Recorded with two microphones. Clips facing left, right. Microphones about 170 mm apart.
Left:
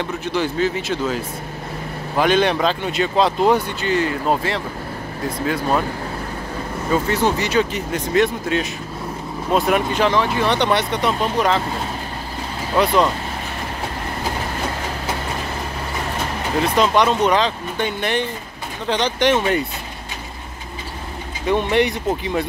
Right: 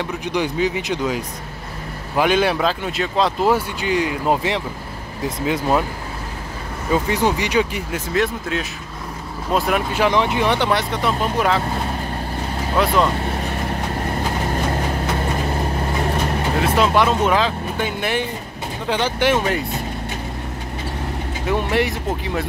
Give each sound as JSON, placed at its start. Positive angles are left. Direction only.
{"t": 0.0, "sound": "speech", "side_deg": -15}
{"t": 6.9, "sound": "speech", "side_deg": -15}
{"t": 8.2, "sound": "speech", "side_deg": 0}
{"t": 10.0, "sound": "speech", "side_deg": -15}
{"t": 12.7, "sound": "speech", "side_deg": 0}
{"t": 16.6, "sound": "speech", "side_deg": -5}
{"t": 21.5, "sound": "speech", "side_deg": -5}